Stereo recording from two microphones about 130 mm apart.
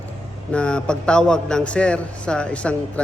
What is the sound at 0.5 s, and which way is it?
A man's voice, 10° left (ahead or behind).